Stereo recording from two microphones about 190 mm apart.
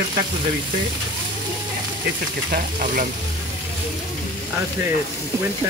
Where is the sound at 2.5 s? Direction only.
45° right (ahead or behind).